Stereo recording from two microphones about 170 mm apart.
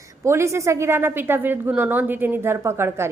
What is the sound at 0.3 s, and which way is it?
A woman's voice, 15° right (ahead or behind).